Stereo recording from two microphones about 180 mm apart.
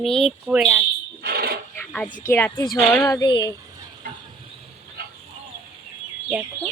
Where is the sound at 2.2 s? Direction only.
10° left (ahead or behind).